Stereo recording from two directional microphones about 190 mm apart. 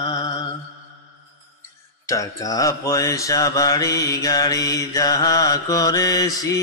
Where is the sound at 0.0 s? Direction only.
20° left (ahead or behind).